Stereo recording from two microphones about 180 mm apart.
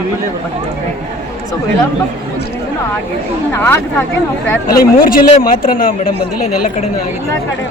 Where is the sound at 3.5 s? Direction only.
10° left (ahead or behind).